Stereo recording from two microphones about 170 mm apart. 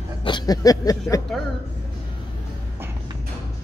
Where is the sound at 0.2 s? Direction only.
25° left (ahead or behind).